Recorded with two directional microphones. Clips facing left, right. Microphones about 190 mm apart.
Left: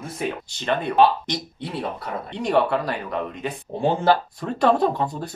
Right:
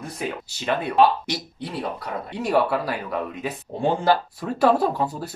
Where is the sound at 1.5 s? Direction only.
25° left (ahead or behind).